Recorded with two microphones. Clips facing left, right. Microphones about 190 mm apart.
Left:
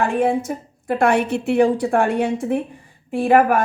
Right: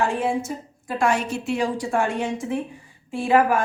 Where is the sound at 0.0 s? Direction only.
60° left (ahead or behind).